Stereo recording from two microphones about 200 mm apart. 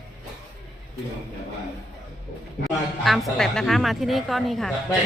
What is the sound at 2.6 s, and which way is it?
A woman's voice, centre (ahead or behind).